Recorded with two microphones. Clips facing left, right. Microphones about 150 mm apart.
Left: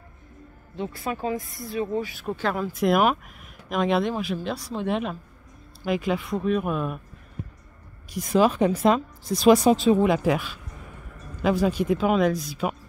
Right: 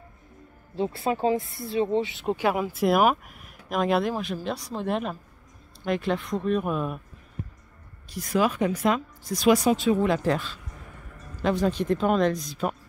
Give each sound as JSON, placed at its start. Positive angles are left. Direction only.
{"t": 0.7, "sound": "speech", "side_deg": -30}
{"t": 8.1, "sound": "speech", "side_deg": 20}
{"t": 10.0, "sound": "speech", "side_deg": 15}